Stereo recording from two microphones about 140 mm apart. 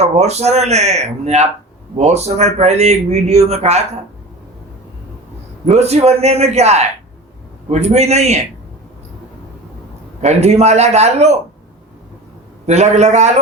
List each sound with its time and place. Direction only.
0.0 s a man's voice: 50° right (ahead or behind)
5.6 s a man's voice: 50° right (ahead or behind)
10.2 s a man's voice: 55° right (ahead or behind)
12.6 s a man's voice: 55° right (ahead or behind)